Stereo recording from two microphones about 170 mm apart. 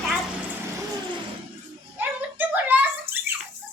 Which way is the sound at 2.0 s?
10° right (ahead or behind).